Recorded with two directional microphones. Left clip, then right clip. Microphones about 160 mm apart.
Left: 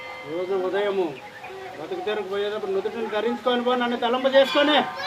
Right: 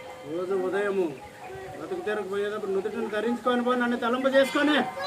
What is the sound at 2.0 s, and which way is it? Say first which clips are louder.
Speech: left 3 dB; 30° right (ahead or behind).